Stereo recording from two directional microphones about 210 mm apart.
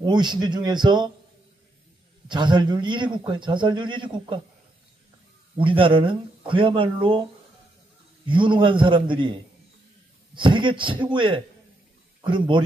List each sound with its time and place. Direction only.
0.0 s a man's voice: 20° right (ahead or behind)
2.2 s a man's voice: 20° right (ahead or behind)
5.6 s a man's voice: 25° right (ahead or behind)
8.3 s a man's voice: 25° right (ahead or behind)
10.3 s a man's voice: 25° right (ahead or behind)